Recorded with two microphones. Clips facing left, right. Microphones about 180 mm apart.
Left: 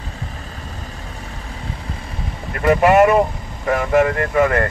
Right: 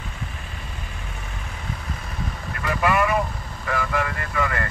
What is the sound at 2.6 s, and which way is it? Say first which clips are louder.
Speech: left 10 dB; 65° left (ahead or behind).